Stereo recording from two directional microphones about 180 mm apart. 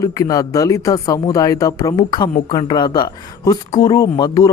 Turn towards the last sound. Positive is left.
turn(degrees=20)  # may be behind; listen again after turning